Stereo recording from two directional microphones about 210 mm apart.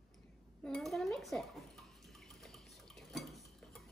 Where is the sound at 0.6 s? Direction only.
Centre (ahead or behind).